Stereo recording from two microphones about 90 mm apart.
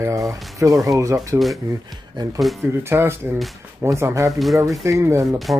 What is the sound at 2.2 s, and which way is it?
Speech, 55° right (ahead or behind).